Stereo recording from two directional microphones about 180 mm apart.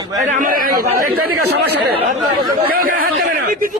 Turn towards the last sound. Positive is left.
turn(degrees=-55)  # may be behind; listen again after turning